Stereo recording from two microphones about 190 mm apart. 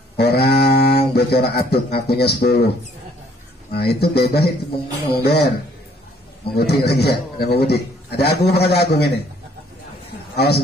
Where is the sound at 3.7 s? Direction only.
55° left (ahead or behind).